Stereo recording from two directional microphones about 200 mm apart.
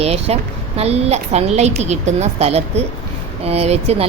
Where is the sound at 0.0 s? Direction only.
30° right (ahead or behind).